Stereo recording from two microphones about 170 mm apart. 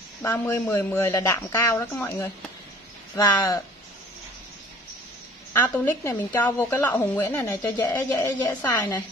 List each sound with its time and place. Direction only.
0.2 s a woman's voice: 15° left (ahead or behind)
5.5 s a woman's voice: 15° left (ahead or behind)